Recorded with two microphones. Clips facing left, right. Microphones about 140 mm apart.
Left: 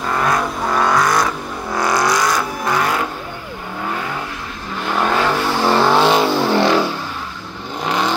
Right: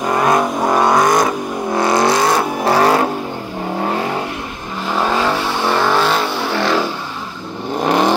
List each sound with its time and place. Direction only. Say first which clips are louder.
0.0 s vehicle: right 4 dB; 20° right (ahead or behind)
4.8 s vehicle: right 1 dB; 5° right (ahead or behind)
5.7 s vehicle: left 2 dB; 20° left (ahead or behind)
6.0 s vehicle: left 3 dB; 5° left (ahead or behind)
7.8 s vehicle: right 5 dB; 50° right (ahead or behind)